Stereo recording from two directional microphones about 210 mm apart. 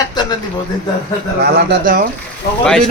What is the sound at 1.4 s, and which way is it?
Speech, 45° right (ahead or behind).